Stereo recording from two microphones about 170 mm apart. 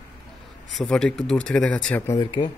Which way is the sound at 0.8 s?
5° left (ahead or behind).